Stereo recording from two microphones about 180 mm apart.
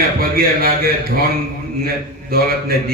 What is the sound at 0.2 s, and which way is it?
A man's voice, 55° right (ahead or behind).